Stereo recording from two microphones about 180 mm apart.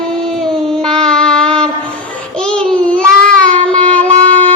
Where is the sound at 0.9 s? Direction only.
5° left (ahead or behind).